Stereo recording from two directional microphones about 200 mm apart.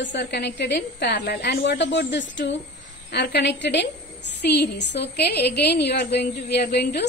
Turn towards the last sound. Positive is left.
turn(degrees=55)  # may be behind; listen again after turning